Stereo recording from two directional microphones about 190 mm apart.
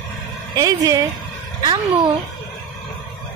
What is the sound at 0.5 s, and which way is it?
Speech, 20° right (ahead or behind).